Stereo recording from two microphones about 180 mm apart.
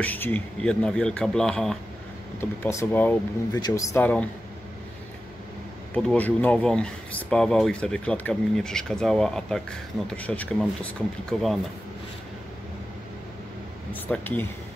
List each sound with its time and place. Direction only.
0.0 s speech: 10° left (ahead or behind)
5.9 s speech: 10° left (ahead or behind)
14.0 s speech: 10° left (ahead or behind)